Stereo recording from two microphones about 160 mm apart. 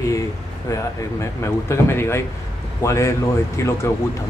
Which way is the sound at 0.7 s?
15° left (ahead or behind).